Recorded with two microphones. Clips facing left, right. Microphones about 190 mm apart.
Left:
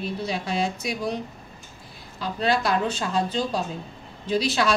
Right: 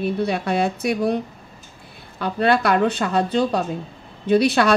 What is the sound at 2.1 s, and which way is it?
A woman's voice, 60° right (ahead or behind).